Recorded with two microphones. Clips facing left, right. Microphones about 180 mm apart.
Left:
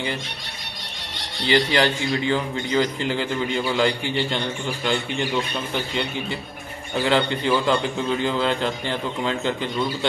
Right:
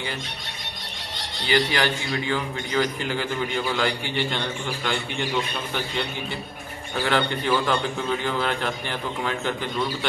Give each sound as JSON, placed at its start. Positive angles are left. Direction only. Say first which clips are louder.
{"t": 1.5, "sound": "a man's voice", "louder": "left 3 dB", "side_deg": 25}
{"t": 7.1, "sound": "a man's voice", "louder": "left 2 dB", "side_deg": 20}